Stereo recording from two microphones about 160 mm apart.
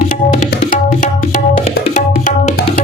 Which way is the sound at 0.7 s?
55° left (ahead or behind).